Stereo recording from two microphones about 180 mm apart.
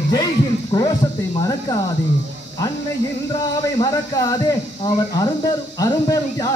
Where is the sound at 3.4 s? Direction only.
20° left (ahead or behind).